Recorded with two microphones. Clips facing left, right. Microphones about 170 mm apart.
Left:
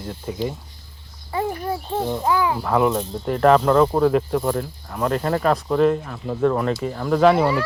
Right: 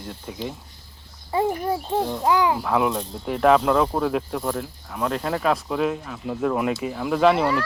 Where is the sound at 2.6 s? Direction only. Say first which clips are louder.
Left 3 dB; centre (ahead or behind).